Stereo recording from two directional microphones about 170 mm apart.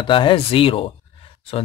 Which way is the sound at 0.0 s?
30° left (ahead or behind).